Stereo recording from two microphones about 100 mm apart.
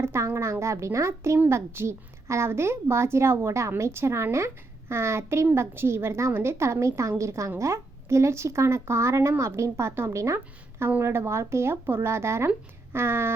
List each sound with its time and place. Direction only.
0.0 s a woman's voice: 25° right (ahead or behind)